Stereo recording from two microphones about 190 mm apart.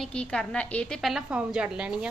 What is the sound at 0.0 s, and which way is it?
A woman's voice, 5° left (ahead or behind).